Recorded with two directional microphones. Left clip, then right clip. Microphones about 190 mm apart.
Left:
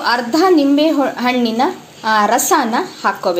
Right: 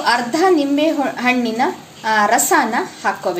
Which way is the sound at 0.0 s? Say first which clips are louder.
Left 1 dB; 30° left (ahead or behind).